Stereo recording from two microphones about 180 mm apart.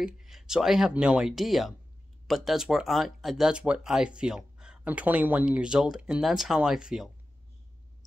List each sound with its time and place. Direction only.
0.0 s speech: centre (ahead or behind)